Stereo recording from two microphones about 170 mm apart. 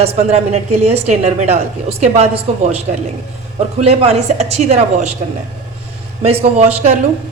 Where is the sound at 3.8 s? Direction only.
40° right (ahead or behind).